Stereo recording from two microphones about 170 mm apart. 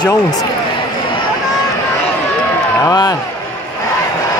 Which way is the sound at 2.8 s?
25° left (ahead or behind).